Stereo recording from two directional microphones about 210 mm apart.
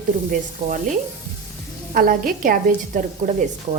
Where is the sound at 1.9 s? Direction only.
40° right (ahead or behind).